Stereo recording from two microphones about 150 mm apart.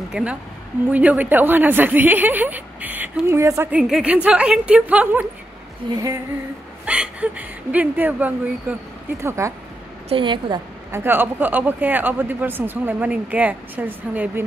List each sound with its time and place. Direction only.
0.1 s a woman's voice: 10° right (ahead or behind)
3.9 s speech: 10° right (ahead or behind)
5.9 s female singing: 25° right (ahead or behind)
6.9 s speech: 10° right (ahead or behind)
9.2 s female singing: 20° right (ahead or behind)
10.0 s a woman's voice: 35° right (ahead or behind)
10.9 s speech: 15° right (ahead or behind)